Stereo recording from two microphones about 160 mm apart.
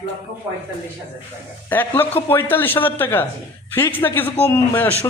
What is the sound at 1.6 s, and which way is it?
Speech, 15° left (ahead or behind).